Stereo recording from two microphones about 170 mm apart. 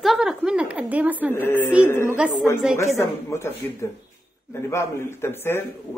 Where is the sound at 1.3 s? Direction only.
10° left (ahead or behind).